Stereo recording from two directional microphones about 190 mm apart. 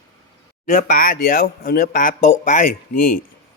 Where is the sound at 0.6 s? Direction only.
45° left (ahead or behind).